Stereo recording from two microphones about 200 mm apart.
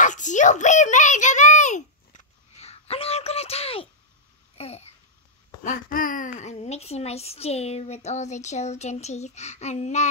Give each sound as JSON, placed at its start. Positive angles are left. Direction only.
{"t": 0.0, "sound": "a sound", "side_deg": 40}
{"t": 4.6, "sound": "babbling", "side_deg": 30}
{"t": 5.6, "sound": "speech", "side_deg": 40}